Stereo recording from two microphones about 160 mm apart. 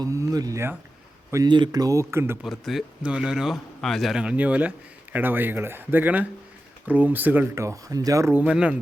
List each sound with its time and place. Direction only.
0.0 s speech: 20° right (ahead or behind)
2.4 s speech: centre (ahead or behind)